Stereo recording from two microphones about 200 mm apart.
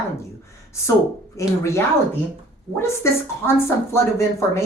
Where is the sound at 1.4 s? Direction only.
15° left (ahead or behind).